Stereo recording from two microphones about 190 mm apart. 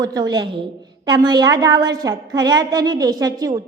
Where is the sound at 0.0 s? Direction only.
20° right (ahead or behind).